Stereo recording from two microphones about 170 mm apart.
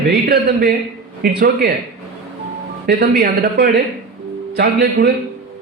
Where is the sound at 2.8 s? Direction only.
70° right (ahead or behind).